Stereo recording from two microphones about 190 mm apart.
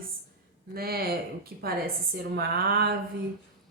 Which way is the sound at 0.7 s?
55° right (ahead or behind).